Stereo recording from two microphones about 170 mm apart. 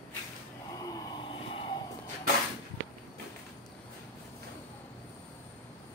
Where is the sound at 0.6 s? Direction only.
20° left (ahead or behind).